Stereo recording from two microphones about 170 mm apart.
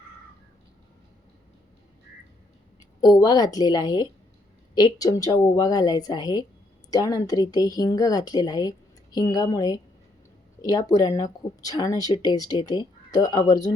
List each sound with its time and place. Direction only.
3.0 s speech: 25° left (ahead or behind)